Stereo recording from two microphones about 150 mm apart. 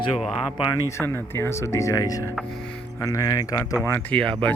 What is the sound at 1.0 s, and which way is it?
Speech, 15° left (ahead or behind).